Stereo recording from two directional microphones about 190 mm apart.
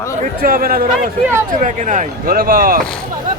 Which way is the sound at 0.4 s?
50° right (ahead or behind).